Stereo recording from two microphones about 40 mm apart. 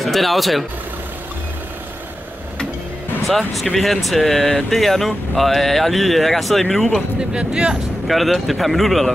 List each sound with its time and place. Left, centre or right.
0.0 s speech: centre
3.3 s speech: centre
7.3 s speech: right
8.1 s speech: centre